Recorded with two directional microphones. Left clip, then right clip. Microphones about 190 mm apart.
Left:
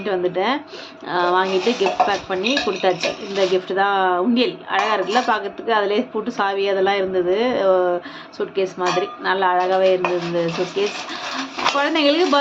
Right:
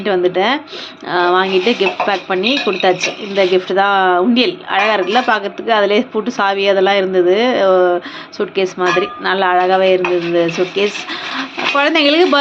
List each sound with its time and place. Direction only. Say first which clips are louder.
0.0 s speech: right 6 dB; 20° right (ahead or behind)